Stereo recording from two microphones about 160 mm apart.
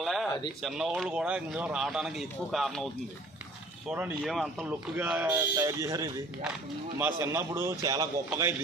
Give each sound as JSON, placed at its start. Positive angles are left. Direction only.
{"t": 0.0, "sound": "a sound", "side_deg": 0}
{"t": 0.6, "sound": "a man's voice", "side_deg": 0}
{"t": 4.7, "sound": "a man's voice", "side_deg": -10}